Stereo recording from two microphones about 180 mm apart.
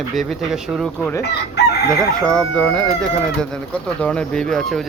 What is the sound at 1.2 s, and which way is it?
Chicken, 70° left (ahead or behind).